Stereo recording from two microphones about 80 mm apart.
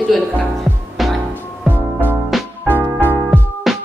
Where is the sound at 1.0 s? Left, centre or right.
Centre.